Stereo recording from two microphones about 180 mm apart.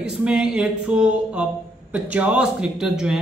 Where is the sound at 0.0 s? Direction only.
5° right (ahead or behind).